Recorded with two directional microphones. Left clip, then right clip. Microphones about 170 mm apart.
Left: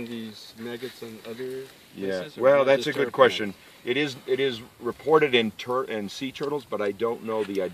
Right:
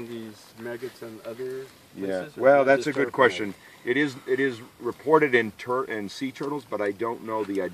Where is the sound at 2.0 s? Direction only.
40° right (ahead or behind).